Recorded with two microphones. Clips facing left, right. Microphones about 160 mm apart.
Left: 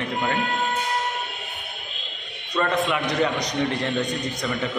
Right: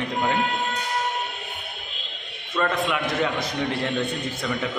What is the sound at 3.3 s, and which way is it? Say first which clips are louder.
Speech: left 1 dB; 15° left (ahead or behind).